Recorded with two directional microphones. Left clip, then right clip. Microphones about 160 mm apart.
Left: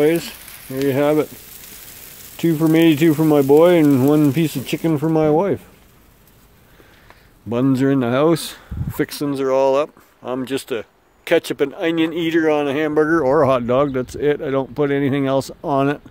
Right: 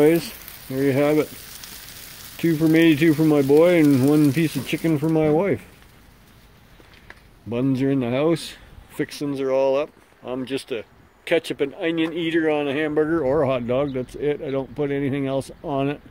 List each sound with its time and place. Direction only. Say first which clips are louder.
0.0 s speech: left 1 dB; centre (ahead or behind)
0.8 s speech: left 3 dB; 20° left (ahead or behind)
2.3 s speech: left 2 dB; 25° left (ahead or behind)
7.4 s speech: left 5 dB; 50° left (ahead or behind)